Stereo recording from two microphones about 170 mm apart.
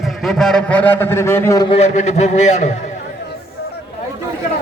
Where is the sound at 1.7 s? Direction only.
45° left (ahead or behind).